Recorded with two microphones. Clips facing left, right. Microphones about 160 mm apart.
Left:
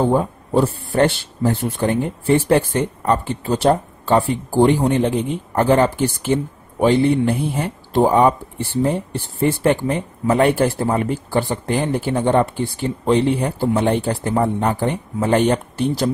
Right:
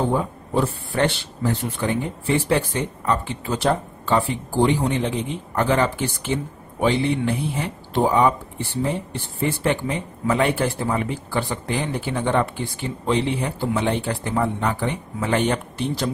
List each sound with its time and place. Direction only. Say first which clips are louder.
0.1 s speech: left 5 dB; 40° left (ahead or behind)